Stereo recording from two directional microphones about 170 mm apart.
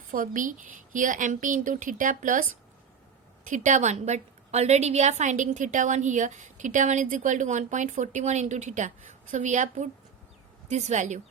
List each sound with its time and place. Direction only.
0.1 s a woman's voice: 50° right (ahead or behind)
3.5 s a woman's voice: 45° right (ahead or behind)